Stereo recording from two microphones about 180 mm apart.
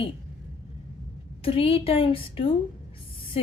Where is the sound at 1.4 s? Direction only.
30° left (ahead or behind).